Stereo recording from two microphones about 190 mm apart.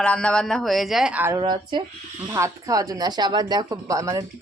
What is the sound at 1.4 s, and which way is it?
Speech, 25° right (ahead or behind).